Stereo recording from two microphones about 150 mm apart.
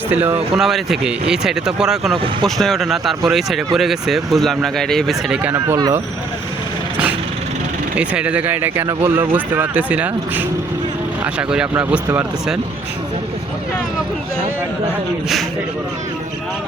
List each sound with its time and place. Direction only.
0.1 s speech: 10° right (ahead or behind)
5.6 s speech: 20° right (ahead or behind)
7.9 s speech: 10° right (ahead or behind)